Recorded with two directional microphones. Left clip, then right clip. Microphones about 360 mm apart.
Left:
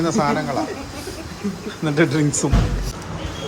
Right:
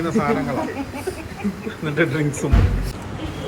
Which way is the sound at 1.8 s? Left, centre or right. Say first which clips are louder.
Left 2 dB; centre.